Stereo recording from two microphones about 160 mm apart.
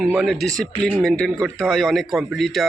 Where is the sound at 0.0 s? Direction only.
Centre (ahead or behind).